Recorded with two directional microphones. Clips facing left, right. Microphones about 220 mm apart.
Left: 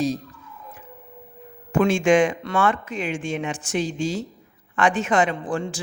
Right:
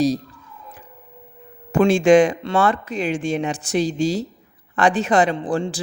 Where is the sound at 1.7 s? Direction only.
35° right (ahead or behind).